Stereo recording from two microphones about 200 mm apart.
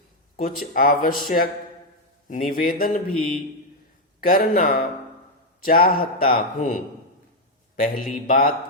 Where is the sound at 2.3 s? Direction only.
45° left (ahead or behind).